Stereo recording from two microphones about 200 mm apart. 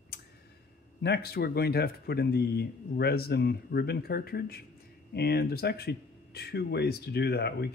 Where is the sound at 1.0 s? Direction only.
55° left (ahead or behind).